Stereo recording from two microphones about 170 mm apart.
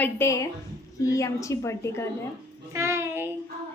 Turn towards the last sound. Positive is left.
turn(degrees=-15)  # may be behind; listen again after turning